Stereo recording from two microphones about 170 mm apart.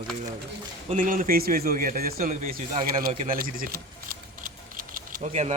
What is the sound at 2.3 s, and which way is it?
Speech, 45° right (ahead or behind).